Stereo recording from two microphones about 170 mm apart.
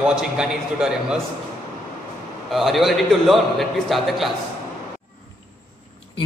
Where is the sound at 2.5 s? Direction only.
Centre (ahead or behind).